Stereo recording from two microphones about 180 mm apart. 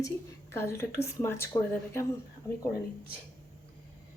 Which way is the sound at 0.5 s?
15° left (ahead or behind).